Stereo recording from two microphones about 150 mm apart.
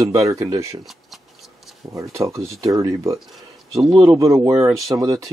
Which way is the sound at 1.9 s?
20° right (ahead or behind).